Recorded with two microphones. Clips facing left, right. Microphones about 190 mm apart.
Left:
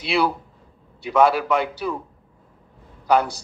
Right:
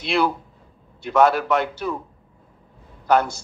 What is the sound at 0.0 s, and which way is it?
Speech, 5° left (ahead or behind).